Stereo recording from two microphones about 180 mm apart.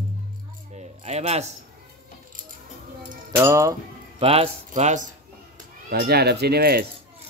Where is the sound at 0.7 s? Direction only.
35° right (ahead or behind).